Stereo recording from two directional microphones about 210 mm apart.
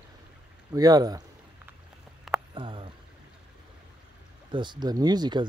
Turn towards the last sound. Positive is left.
turn(degrees=-20)  # may be behind; listen again after turning